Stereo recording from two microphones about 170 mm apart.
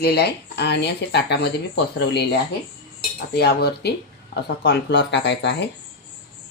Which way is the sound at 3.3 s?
75° left (ahead or behind).